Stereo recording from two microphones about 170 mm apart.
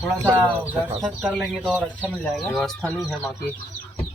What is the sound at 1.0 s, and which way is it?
Speech, 5° right (ahead or behind).